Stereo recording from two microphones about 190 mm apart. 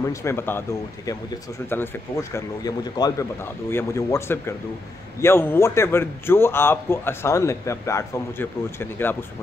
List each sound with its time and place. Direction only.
0.0 s a man's voice: 15° left (ahead or behind)